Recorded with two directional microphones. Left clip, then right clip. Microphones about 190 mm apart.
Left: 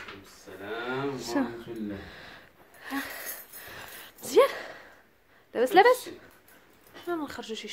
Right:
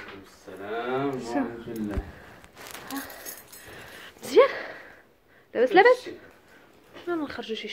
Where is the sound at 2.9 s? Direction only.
35° left (ahead or behind).